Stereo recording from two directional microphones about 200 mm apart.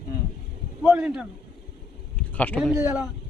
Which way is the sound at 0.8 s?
5° right (ahead or behind).